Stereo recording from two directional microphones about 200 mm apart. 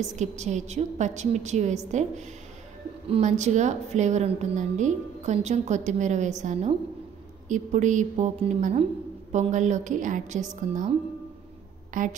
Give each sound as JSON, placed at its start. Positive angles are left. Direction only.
{"t": 0.0, "sound": "a woman's voice", "side_deg": -35}
{"t": 11.9, "sound": "a woman's voice", "side_deg": -40}